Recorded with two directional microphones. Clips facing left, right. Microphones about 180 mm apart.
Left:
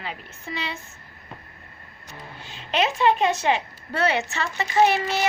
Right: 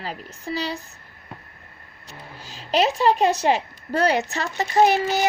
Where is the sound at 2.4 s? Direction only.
40° right (ahead or behind).